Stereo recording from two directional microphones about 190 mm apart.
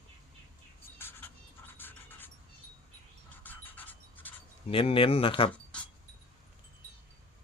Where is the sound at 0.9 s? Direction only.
10° left (ahead or behind).